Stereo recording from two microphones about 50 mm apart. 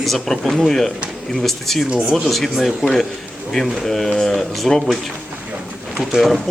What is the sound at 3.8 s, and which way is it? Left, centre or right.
Speech, centre.